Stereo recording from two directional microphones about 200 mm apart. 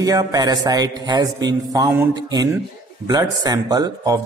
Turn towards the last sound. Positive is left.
turn(degrees=-20)  # may be behind; listen again after turning